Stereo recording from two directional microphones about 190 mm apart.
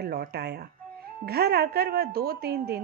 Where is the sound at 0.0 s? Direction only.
55° right (ahead or behind).